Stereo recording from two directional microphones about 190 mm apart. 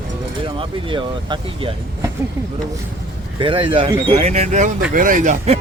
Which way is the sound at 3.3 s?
25° right (ahead or behind).